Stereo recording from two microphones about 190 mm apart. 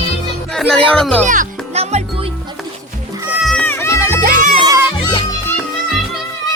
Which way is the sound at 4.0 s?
10° right (ahead or behind).